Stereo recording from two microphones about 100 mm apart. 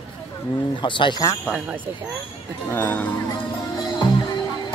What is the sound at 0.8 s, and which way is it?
Speech, 55° left (ahead or behind).